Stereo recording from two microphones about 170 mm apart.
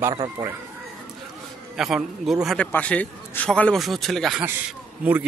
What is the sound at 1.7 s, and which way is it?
A man's voice, centre (ahead or behind).